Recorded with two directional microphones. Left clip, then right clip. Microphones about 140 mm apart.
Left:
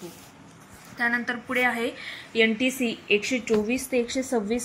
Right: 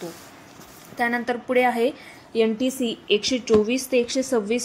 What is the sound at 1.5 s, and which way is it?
Speech, 90° right.